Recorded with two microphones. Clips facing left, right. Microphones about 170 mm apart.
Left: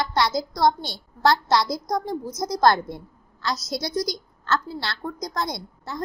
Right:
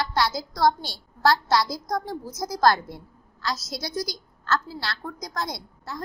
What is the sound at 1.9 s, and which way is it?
Speech, 15° left (ahead or behind).